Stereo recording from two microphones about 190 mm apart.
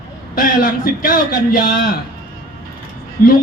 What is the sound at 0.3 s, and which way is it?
A man's voice, 50° left (ahead or behind).